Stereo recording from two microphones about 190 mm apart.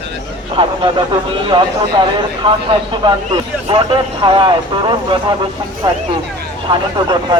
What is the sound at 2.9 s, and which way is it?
Speech, 25° right (ahead or behind).